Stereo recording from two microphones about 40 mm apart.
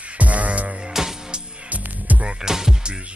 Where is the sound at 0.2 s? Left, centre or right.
Right.